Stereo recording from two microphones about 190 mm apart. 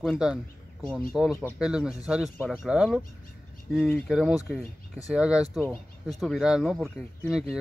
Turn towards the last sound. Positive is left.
turn(degrees=0)  # may be behind; listen again after turning